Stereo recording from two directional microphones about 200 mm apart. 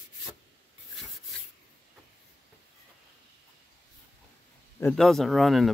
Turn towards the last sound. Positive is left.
turn(degrees=0)  # may be behind; listen again after turning